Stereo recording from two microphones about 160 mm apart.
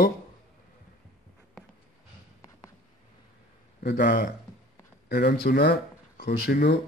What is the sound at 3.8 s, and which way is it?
Speech, 80° left.